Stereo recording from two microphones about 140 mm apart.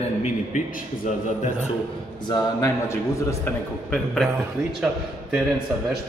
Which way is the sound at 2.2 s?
30° left (ahead or behind).